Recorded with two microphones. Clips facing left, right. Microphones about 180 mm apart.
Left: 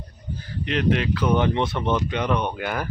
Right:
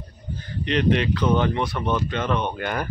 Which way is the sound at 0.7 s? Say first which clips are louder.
Right 1 dB; centre (ahead or behind).